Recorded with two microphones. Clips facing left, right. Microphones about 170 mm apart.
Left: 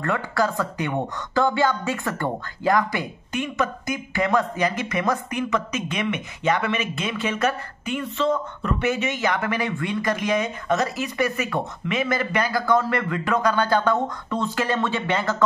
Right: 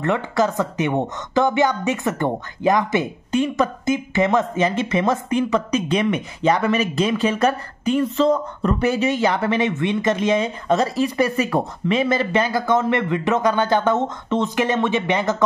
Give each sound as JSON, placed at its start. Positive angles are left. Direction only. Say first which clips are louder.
{"t": 0.0, "sound": "speech", "louder": "right 4 dB", "side_deg": -20}